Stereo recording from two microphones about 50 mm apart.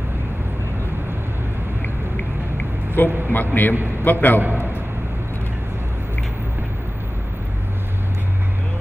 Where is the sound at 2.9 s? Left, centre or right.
Left.